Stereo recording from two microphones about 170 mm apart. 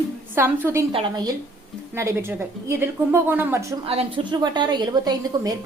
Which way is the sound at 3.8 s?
35° right (ahead or behind).